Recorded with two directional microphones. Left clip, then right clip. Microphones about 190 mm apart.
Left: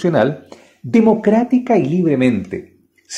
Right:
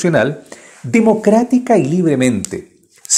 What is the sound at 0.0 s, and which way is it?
Speech, 25° right (ahead or behind).